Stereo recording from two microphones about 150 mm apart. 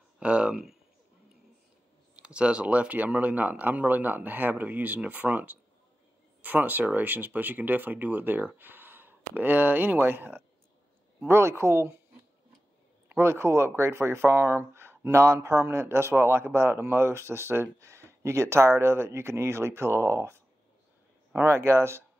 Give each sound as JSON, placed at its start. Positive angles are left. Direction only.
{"t": 0.2, "sound": "speech", "side_deg": -5}
{"t": 2.2, "sound": "speech", "side_deg": -5}
{"t": 13.1, "sound": "speech", "side_deg": -15}